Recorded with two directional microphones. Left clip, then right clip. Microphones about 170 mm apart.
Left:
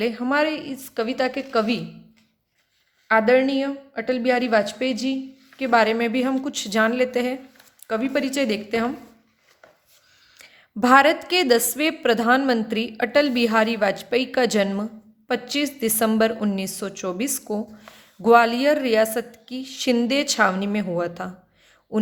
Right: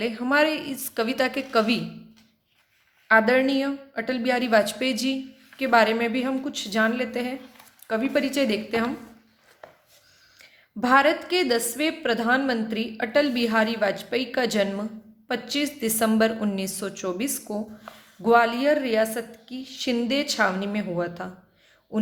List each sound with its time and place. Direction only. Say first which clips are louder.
0.0 s a woman's voice: even; 20° left (ahead or behind)
3.1 s a woman's voice: left 1 dB; 15° left (ahead or behind)
10.3 s a woman's voice: left 4 dB; 30° left (ahead or behind)